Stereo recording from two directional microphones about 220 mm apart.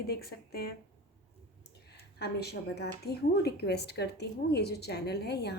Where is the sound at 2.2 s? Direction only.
45° left (ahead or behind).